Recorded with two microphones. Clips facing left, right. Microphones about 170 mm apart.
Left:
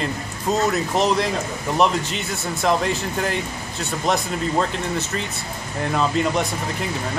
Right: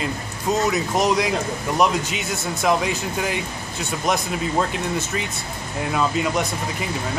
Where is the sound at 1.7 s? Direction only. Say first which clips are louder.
Left 1 dB; 5° right (ahead or behind).